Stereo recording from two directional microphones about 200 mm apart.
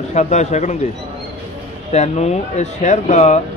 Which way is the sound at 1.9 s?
35° left (ahead or behind).